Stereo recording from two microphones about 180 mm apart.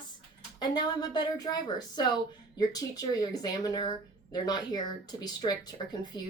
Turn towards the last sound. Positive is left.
turn(degrees=25)  # may be behind; listen again after turning